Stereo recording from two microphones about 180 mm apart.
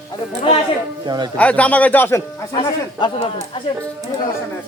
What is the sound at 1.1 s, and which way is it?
Speech, 25° right (ahead or behind).